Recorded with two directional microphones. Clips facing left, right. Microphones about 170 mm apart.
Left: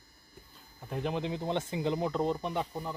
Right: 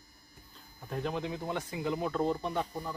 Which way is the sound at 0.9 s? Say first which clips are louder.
Left 1 dB; 20° left (ahead or behind).